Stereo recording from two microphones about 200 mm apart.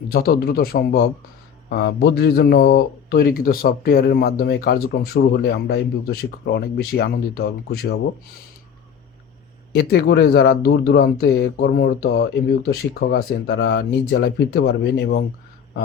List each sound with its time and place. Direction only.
0.1 s speech: 50° left (ahead or behind)
9.7 s speech: 55° left (ahead or behind)